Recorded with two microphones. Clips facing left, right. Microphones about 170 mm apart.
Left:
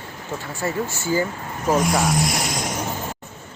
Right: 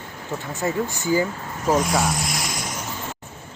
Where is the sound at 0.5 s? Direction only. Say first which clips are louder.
Right 1 dB; 15° right (ahead or behind).